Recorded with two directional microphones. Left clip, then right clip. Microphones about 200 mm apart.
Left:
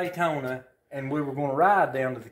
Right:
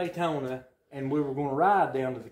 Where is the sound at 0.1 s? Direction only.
25° left (ahead or behind).